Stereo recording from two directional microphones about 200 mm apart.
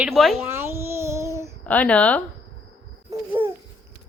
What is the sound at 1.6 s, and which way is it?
Speech, 5° left (ahead or behind).